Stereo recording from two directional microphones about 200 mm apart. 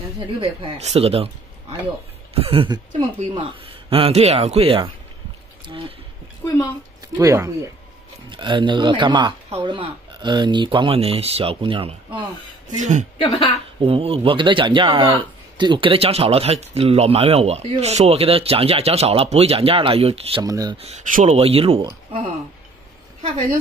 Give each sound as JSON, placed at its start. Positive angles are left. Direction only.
{"t": 0.4, "sound": "speech", "side_deg": -30}
{"t": 7.2, "sound": "speech", "side_deg": -15}
{"t": 12.6, "sound": "speech", "side_deg": -40}
{"t": 13.2, "sound": "speech", "side_deg": 25}
{"t": 13.7, "sound": "speech", "side_deg": -30}
{"t": 20.4, "sound": "speech", "side_deg": -15}
{"t": 20.7, "sound": "speech", "side_deg": -35}